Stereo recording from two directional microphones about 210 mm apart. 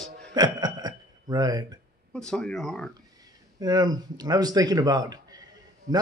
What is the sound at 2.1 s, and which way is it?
Speech, 5° left (ahead or behind).